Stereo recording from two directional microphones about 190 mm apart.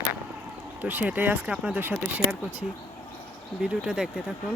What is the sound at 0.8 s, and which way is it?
Speech, 10° right (ahead or behind).